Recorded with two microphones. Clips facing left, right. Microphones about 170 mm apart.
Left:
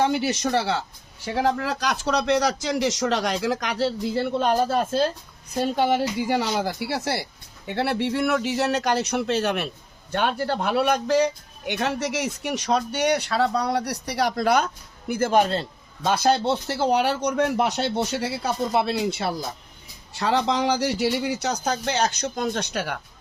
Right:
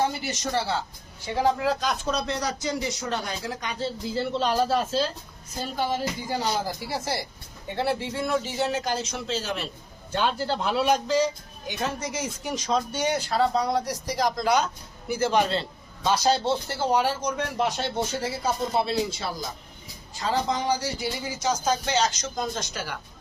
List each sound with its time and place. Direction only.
0.1 s speech: 90° left; by 5.1 s 55° left (ahead or behind)
5.5 s a man's voice: 70° left (ahead or behind)